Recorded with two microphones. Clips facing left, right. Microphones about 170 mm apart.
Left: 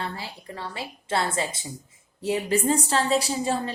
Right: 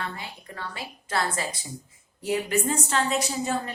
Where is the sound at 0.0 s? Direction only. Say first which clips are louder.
Left 2 dB; 30° left (ahead or behind).